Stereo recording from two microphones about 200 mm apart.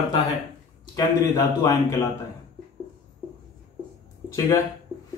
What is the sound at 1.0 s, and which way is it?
Speech, 15° left (ahead or behind).